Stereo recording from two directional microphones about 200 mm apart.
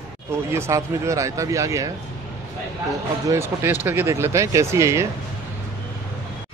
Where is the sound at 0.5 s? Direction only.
15° right (ahead or behind).